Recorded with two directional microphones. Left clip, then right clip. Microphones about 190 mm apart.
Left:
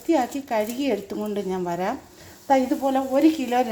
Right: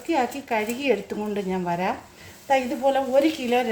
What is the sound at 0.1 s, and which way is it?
Speech, 15° left (ahead or behind).